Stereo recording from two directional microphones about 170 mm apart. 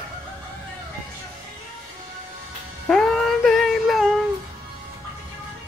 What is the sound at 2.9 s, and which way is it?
Music, centre (ahead or behind).